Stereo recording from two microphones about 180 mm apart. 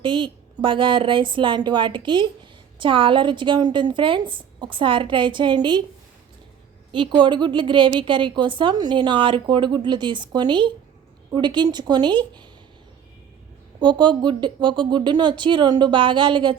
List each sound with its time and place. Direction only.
0.0 s a woman's voice: 25° right (ahead or behind)
6.9 s a woman's voice: 25° right (ahead or behind)
13.7 s a woman's voice: 25° right (ahead or behind)